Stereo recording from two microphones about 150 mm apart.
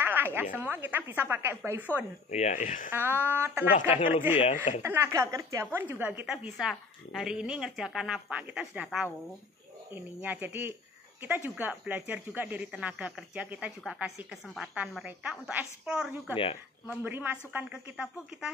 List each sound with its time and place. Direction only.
0.0 s speech: 15° right (ahead or behind)
2.3 s speech: 50° left (ahead or behind)
2.9 s speech: 15° right (ahead or behind)
4.4 s speech: 45° left (ahead or behind)
4.8 s a woman's voice: 20° right (ahead or behind)